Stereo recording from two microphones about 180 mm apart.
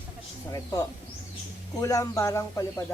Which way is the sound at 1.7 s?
20° left (ahead or behind).